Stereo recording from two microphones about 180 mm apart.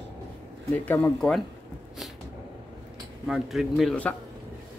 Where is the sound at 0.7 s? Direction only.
10° left (ahead or behind).